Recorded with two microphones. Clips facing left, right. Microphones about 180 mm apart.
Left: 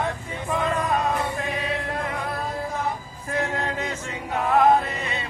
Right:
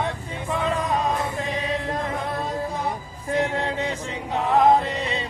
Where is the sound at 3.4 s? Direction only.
15° right (ahead or behind).